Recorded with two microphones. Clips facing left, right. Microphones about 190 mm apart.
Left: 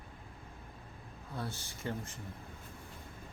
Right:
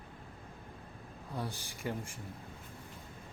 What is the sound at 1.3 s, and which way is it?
Speech, 15° right (ahead or behind).